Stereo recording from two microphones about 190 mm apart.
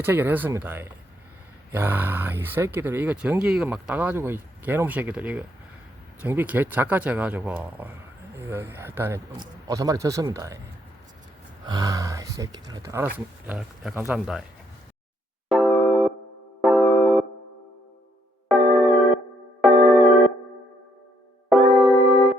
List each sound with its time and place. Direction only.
0.0 s speech: 10° right (ahead or behind)
11.6 s speech: 20° right (ahead or behind); by 14.4 s 5° right (ahead or behind)
15.4 s music: centre (ahead or behind)
18.4 s music: 5° right (ahead or behind)
21.5 s music: 5° right (ahead or behind)